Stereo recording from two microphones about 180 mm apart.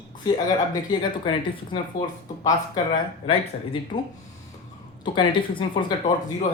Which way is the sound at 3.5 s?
45° left (ahead or behind).